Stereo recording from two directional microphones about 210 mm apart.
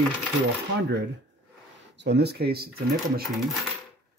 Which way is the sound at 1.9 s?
55° right (ahead or behind).